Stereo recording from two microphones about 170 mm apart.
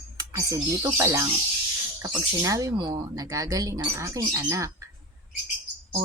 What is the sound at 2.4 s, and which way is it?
Speech, 20° right (ahead or behind).